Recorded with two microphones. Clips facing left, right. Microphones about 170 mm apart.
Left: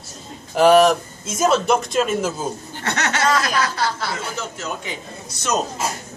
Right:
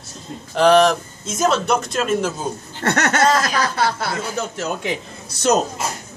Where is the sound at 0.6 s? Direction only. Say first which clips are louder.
Left 1 dB; 5° left (ahead or behind).